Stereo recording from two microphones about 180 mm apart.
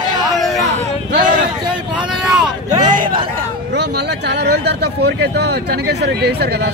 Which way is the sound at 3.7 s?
70° right (ahead or behind).